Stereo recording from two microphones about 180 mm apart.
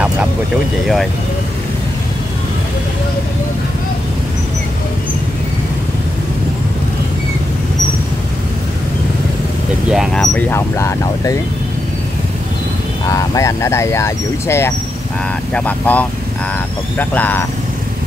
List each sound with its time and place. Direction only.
9.8 s speech: centre (ahead or behind); by 11.3 s 15° left (ahead or behind)
13.1 s speech: 15° left (ahead or behind)